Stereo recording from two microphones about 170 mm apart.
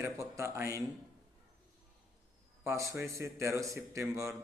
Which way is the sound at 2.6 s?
15° right (ahead or behind).